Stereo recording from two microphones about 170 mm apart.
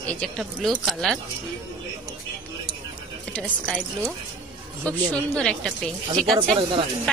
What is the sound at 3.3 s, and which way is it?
Speech, 5° left (ahead or behind).